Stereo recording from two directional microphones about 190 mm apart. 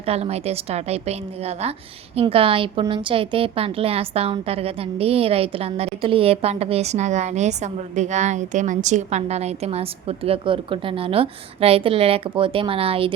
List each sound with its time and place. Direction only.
0.0 s a woman's voice: 35° right (ahead or behind)